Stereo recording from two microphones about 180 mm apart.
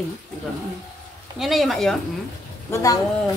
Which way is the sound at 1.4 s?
Centre (ahead or behind).